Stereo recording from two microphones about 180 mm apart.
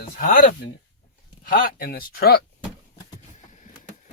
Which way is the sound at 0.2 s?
50° left (ahead or behind).